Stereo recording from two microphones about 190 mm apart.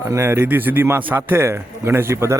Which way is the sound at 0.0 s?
15° right (ahead or behind).